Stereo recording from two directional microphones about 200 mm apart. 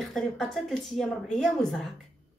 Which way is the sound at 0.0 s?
Centre (ahead or behind).